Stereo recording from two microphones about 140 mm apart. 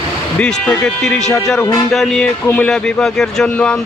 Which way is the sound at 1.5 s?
25° left (ahead or behind).